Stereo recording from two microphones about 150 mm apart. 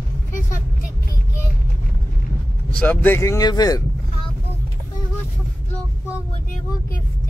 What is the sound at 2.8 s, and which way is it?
Speech, 15° left (ahead or behind).